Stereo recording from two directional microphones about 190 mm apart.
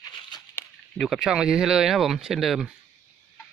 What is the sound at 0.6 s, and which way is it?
Speech, centre (ahead or behind).